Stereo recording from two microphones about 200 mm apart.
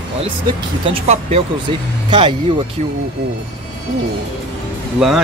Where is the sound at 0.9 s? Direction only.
30° right (ahead or behind).